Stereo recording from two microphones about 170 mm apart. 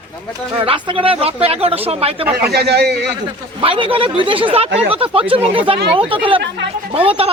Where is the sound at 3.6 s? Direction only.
30° right (ahead or behind).